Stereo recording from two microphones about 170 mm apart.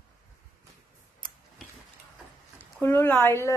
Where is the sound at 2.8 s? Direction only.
10° left (ahead or behind).